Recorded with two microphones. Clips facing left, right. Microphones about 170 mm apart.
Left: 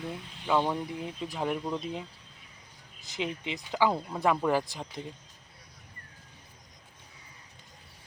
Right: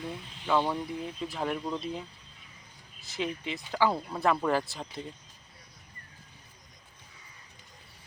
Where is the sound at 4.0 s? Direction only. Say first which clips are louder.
Even; 5° left (ahead or behind).